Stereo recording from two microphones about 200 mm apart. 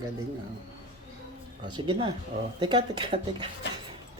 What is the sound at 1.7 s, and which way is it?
Speech, 25° right (ahead or behind).